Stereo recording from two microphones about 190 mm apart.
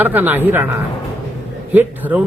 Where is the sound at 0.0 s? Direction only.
10° right (ahead or behind).